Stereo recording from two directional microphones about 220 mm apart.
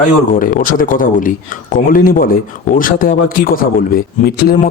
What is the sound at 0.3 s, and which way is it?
Speech, 40° left (ahead or behind).